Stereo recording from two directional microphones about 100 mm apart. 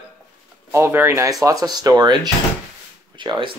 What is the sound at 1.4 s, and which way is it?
Speech, 40° right (ahead or behind).